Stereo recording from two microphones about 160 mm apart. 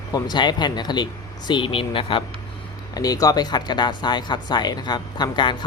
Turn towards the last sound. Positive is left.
turn(degrees=30)  # may be behind; listen again after turning